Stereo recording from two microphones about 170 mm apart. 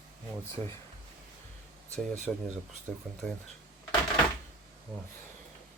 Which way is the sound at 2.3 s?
5° left (ahead or behind).